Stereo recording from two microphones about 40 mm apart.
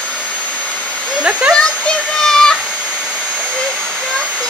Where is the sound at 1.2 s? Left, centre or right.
Right.